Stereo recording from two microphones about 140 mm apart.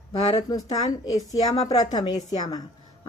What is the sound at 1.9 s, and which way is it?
Speech, 30° left (ahead or behind).